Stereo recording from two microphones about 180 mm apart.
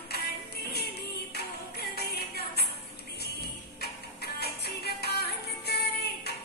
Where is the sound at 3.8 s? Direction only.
65° left (ahead or behind).